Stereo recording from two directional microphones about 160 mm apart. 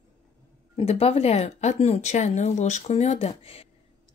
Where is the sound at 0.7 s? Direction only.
40° left (ahead or behind).